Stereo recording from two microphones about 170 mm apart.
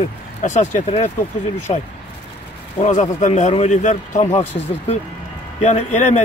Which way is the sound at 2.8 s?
45° left (ahead or behind).